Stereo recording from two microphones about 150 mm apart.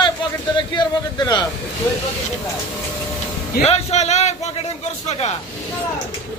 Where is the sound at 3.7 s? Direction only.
45° left (ahead or behind).